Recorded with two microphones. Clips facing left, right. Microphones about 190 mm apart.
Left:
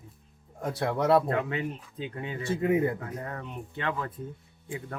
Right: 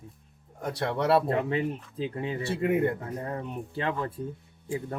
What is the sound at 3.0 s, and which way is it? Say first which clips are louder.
Speech: right 3 dB; 30° right (ahead or behind).